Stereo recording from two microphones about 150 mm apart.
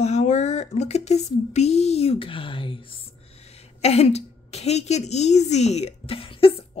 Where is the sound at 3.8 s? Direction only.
45° left (ahead or behind).